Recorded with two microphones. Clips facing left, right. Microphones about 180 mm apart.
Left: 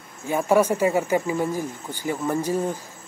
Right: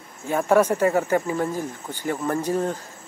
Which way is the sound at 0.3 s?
5° left (ahead or behind).